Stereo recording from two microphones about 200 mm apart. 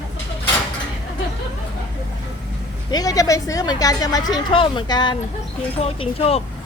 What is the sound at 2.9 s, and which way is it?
A woman's voice, 15° left (ahead or behind).